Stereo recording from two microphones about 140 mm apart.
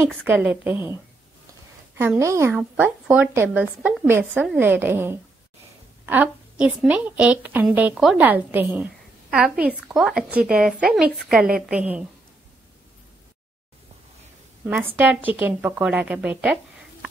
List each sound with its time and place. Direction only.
0.2 s a woman's voice: 5° right (ahead or behind)
2.0 s a woman's voice: 15° right (ahead or behind)
14.6 s a woman's voice: 15° right (ahead or behind)